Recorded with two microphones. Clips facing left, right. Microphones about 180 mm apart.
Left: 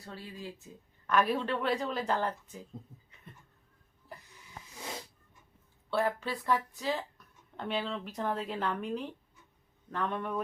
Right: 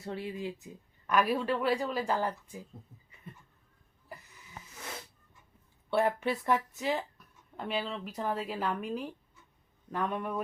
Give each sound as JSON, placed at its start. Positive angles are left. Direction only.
{"t": 0.0, "sound": "speech", "side_deg": -25}
{"t": 4.7, "sound": "a sound", "side_deg": 15}
{"t": 5.9, "sound": "speech", "side_deg": -20}
{"t": 7.5, "sound": "speech", "side_deg": -5}